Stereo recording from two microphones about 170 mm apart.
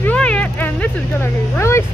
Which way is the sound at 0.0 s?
10° left (ahead or behind).